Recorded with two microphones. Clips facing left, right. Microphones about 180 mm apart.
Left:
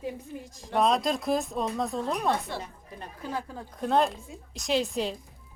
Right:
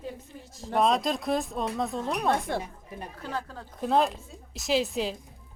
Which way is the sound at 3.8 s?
Centre (ahead or behind).